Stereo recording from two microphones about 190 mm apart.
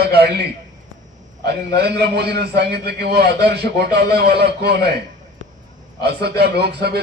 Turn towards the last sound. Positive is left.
turn(degrees=-60)  # may be behind; listen again after turning